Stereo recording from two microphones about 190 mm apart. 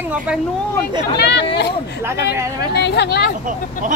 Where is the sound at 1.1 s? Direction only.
60° left (ahead or behind).